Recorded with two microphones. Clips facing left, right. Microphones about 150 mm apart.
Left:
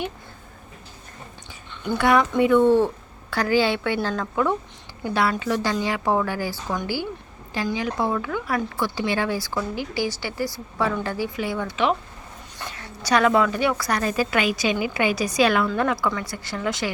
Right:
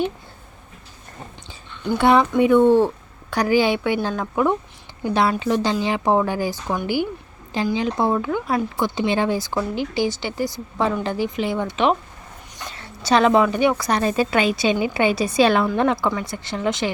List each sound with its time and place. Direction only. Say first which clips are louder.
2.0 s a woman's voice: right 3 dB; 25° right (ahead or behind)